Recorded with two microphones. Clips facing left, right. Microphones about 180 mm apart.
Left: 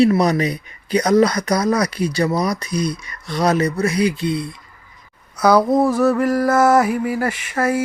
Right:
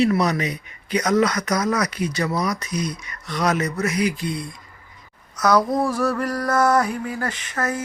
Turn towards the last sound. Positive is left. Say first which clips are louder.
# left 7 dB
turn(degrees=10)  # may be behind; listen again after turning